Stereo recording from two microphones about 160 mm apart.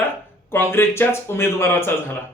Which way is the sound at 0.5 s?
15° left (ahead or behind).